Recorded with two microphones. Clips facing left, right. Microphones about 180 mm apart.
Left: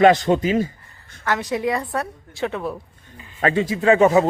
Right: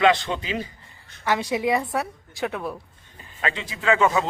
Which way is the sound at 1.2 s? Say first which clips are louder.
Left 1 dB; 10° right (ahead or behind).